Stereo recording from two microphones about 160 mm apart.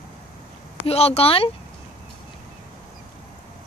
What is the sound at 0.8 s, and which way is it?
Speech, 40° left (ahead or behind).